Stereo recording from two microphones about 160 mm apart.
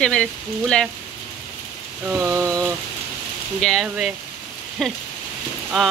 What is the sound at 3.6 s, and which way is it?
Speech, centre (ahead or behind).